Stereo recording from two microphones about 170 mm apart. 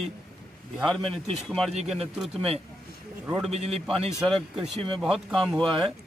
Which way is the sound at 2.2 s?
35° right (ahead or behind).